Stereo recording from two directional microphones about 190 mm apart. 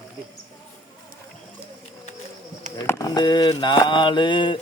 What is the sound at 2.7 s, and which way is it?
Mantra, 15° left (ahead or behind).